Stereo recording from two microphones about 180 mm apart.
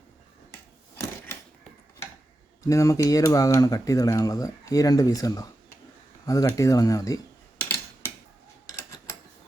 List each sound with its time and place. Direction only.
2.6 s speech: 15° left (ahead or behind)